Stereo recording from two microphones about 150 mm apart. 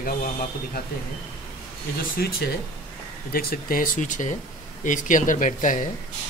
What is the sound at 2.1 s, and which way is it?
Speech, 90° left.